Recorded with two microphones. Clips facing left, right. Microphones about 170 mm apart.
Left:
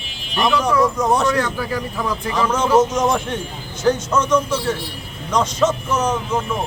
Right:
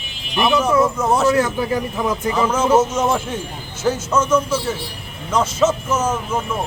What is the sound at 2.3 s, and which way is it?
Speech, 5° right (ahead or behind).